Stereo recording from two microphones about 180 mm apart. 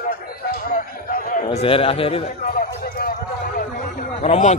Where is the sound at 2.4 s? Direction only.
50° left (ahead or behind).